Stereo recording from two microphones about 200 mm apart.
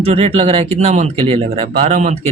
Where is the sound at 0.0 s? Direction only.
30° right (ahead or behind).